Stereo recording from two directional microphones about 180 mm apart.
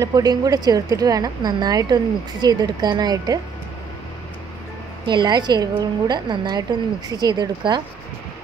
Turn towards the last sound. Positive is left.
turn(degrees=-25)  # may be behind; listen again after turning